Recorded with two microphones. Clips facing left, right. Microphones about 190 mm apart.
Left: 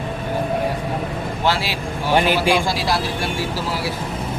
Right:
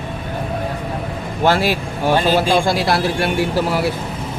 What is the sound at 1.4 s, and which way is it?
Speech, 50° right (ahead or behind).